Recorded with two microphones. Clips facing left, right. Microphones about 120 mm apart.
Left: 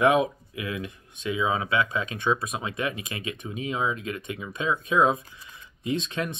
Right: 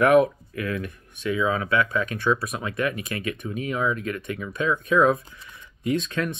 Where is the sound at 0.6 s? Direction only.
15° left (ahead or behind).